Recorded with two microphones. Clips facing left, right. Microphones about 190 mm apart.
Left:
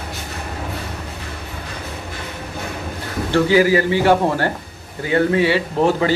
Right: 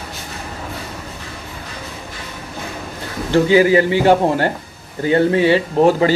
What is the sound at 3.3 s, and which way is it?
A man's voice, 20° right (ahead or behind).